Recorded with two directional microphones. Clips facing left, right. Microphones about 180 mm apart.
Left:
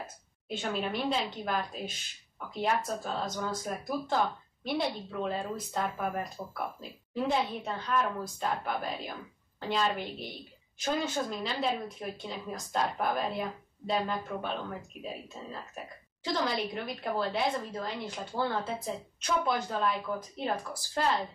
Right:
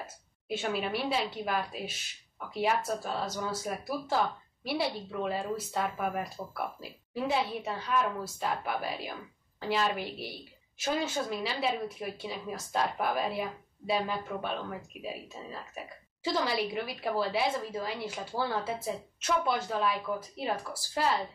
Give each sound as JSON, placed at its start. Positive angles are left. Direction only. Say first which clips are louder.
{"t": 0.0, "sound": "a woman's voice", "louder": "left 1 dB", "side_deg": -5}
{"t": 16.3, "sound": "a woman's voice", "louder": "right 1 dB", "side_deg": -5}